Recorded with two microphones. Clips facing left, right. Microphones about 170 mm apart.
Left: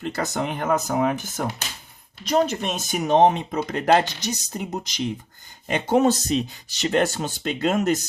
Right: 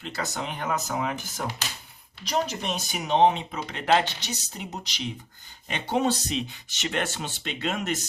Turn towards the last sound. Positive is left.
turn(degrees=40)  # may be behind; listen again after turning